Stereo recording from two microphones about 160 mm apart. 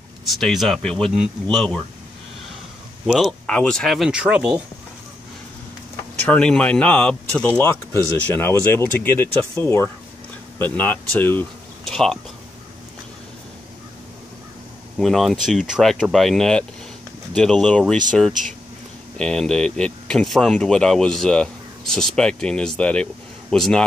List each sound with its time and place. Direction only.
0.2 s speech: centre (ahead or behind)
3.1 s speech: centre (ahead or behind)
6.2 s speech: 5° left (ahead or behind)
15.0 s speech: centre (ahead or behind)